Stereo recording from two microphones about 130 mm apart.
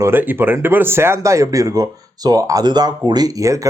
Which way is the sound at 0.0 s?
15° right (ahead or behind).